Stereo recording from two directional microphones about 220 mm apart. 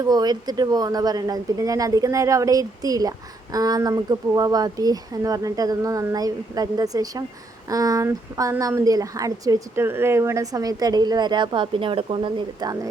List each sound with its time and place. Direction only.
0.0 s a woman's voice: 15° right (ahead or behind)